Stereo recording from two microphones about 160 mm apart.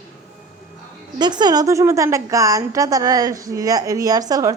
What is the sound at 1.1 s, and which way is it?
A woman's voice, 25° right (ahead or behind).